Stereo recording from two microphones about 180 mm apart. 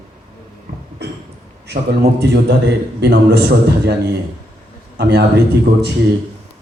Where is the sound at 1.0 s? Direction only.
65° right (ahead or behind).